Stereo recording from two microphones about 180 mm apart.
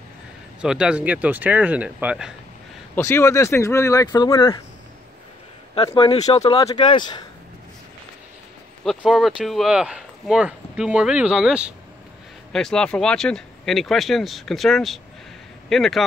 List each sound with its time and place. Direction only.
0.6 s speech: 5° right (ahead or behind)
3.0 s speech: 15° left (ahead or behind)
5.9 s speech: 35° left (ahead or behind)
6.6 s speech: 25° left (ahead or behind)
8.8 s speech: centre (ahead or behind)